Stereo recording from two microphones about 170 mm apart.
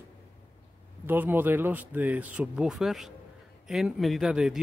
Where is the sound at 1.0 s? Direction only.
10° right (ahead or behind).